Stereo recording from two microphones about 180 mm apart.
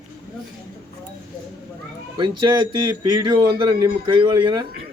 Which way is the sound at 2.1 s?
25° right (ahead or behind).